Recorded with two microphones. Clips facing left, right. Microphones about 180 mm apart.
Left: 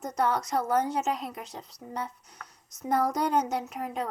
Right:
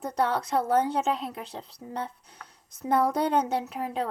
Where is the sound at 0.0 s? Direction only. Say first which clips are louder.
Right 1 dB; 30° right (ahead or behind).